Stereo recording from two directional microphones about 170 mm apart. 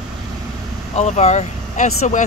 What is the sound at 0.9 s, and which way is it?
Speech, 40° left (ahead or behind).